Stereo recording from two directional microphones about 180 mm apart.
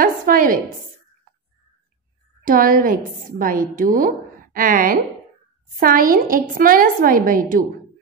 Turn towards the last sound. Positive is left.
turn(degrees=-50)  # may be behind; listen again after turning